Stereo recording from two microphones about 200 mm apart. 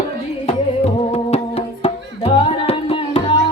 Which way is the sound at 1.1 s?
30° left (ahead or behind).